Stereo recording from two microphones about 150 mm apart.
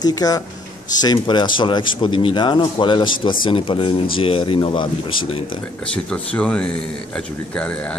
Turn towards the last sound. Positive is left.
turn(degrees=5)  # may be behind; listen again after turning